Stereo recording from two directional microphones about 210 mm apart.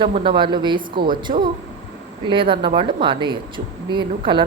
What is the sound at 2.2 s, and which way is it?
A woman's voice, 25° right (ahead or behind).